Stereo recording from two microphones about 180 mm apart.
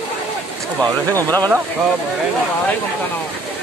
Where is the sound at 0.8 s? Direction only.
20° right (ahead or behind).